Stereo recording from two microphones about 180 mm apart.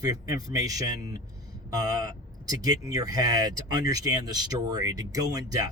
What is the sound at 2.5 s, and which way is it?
Speech, 20° right (ahead or behind).